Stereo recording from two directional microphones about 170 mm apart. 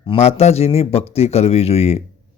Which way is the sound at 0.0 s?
35° left (ahead or behind).